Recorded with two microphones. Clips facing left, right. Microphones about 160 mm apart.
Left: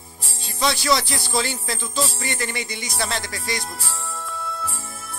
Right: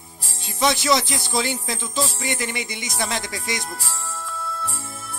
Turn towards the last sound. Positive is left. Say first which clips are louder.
# even
turn(degrees=-20)  # may be behind; listen again after turning